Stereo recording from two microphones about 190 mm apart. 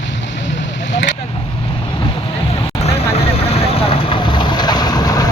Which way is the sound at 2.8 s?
35° left (ahead or behind).